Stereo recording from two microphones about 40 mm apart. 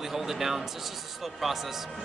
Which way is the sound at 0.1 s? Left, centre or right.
Centre.